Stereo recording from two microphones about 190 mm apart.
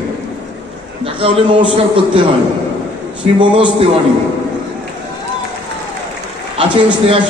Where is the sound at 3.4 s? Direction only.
25° right (ahead or behind).